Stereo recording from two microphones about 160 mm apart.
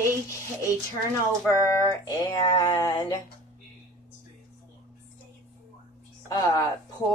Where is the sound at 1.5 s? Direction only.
20° left (ahead or behind).